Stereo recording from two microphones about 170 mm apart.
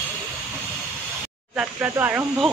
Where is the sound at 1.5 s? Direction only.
10° right (ahead or behind).